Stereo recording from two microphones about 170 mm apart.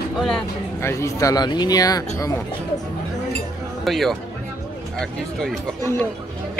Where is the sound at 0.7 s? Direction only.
15° left (ahead or behind).